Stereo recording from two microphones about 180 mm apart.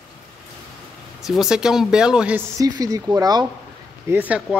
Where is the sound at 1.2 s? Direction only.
Centre (ahead or behind).